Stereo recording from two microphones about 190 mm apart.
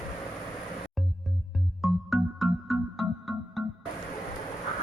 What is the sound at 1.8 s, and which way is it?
Music, centre (ahead or behind).